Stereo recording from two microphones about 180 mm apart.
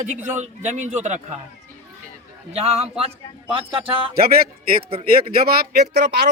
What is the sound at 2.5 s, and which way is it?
Speech, 35° right (ahead or behind).